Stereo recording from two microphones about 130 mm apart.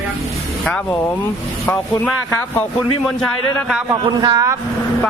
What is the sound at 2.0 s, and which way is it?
Speech, 15° left (ahead or behind).